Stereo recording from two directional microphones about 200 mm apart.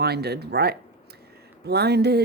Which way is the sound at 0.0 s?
55° right (ahead or behind).